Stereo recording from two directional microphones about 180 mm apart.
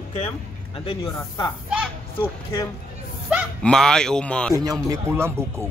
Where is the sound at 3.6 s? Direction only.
5° left (ahead or behind).